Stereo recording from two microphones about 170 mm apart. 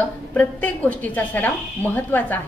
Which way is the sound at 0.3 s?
10° left (ahead or behind).